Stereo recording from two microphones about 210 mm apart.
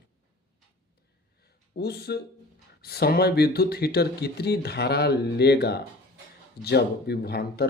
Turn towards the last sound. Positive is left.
turn(degrees=50)  # may be behind; listen again after turning